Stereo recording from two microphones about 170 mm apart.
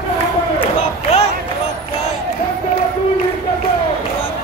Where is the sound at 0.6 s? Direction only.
35° left (ahead or behind).